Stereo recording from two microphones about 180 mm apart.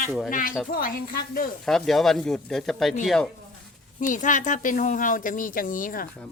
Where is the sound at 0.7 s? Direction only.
50° left (ahead or behind).